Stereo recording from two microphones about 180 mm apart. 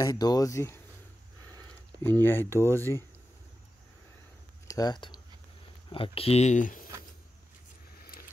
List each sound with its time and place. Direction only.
0.0 s speech: 20° left (ahead or behind)
2.0 s speech: 10° left (ahead or behind)
4.6 s speech: 20° left (ahead or behind); by 6.9 s 45° left (ahead or behind)
8.1 s a sound: 55° left (ahead or behind)